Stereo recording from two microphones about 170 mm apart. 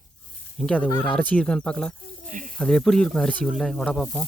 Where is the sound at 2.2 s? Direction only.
50° right (ahead or behind).